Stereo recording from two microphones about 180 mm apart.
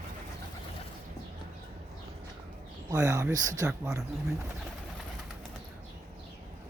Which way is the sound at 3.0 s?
15° right (ahead or behind).